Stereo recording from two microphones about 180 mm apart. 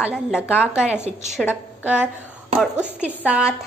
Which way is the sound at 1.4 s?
10° left (ahead or behind).